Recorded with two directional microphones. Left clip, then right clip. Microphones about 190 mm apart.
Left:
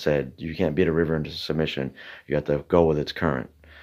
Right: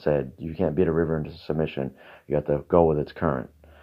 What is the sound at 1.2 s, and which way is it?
Speech, 15° left (ahead or behind).